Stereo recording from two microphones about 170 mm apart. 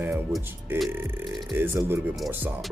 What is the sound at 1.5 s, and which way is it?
Speech, 15° right (ahead or behind).